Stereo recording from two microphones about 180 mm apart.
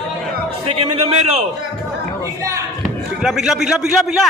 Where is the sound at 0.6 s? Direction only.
35° right (ahead or behind).